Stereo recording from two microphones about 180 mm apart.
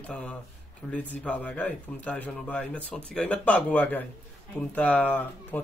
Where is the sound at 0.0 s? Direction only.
5° left (ahead or behind).